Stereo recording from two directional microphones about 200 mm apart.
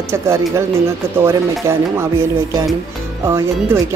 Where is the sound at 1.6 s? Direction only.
15° right (ahead or behind).